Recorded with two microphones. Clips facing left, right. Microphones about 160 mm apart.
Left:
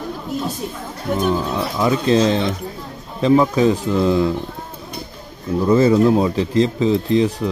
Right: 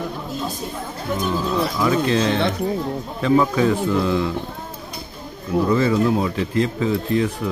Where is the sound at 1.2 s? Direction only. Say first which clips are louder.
Left 1 dB; 25° left (ahead or behind).